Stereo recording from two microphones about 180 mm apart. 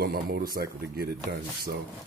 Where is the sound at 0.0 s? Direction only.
60° right (ahead or behind).